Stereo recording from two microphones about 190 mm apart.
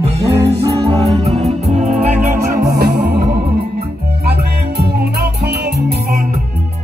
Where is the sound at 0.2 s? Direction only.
15° right (ahead or behind).